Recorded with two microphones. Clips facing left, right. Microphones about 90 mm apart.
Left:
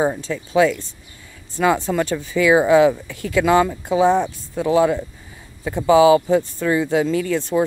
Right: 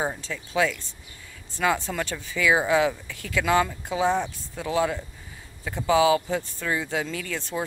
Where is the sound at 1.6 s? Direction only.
25° left (ahead or behind).